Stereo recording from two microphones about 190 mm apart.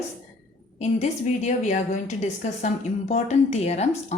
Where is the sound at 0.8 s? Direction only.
35° left (ahead or behind).